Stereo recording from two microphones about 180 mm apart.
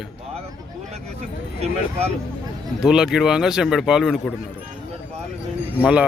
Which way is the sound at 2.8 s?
5° right (ahead or behind).